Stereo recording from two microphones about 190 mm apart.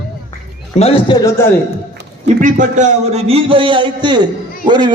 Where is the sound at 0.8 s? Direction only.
30° left (ahead or behind).